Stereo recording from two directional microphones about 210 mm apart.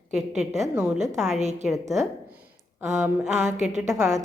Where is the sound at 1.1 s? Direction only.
Centre (ahead or behind).